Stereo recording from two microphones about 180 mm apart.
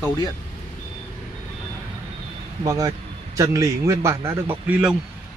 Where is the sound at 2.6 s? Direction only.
20° right (ahead or behind).